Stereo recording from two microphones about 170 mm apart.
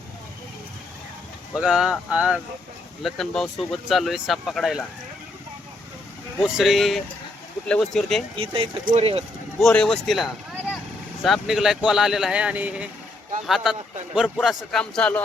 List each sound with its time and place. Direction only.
1.5 s speech: 5° right (ahead or behind)
6.4 s speech: 5° right (ahead or behind)
8.4 s speech: 30° right (ahead or behind)
9.6 s speech: centre (ahead or behind)